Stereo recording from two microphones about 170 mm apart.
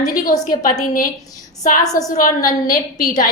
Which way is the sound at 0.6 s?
55° left (ahead or behind).